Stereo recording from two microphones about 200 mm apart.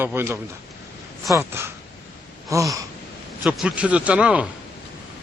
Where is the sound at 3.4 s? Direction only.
5° right (ahead or behind).